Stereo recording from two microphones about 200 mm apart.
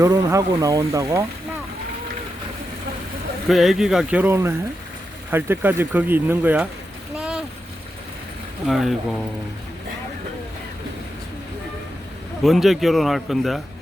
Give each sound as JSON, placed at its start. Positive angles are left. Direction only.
{"t": 0.0, "sound": "speech", "side_deg": -15}
{"t": 3.5, "sound": "a man's voice", "side_deg": 0}
{"t": 7.2, "sound": "a sound", "side_deg": -5}
{"t": 8.6, "sound": "a man's voice", "side_deg": 0}
{"t": 12.4, "sound": "a man's voice", "side_deg": 0}